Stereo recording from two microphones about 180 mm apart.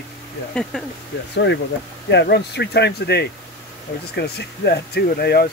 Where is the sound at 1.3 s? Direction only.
75° left (ahead or behind).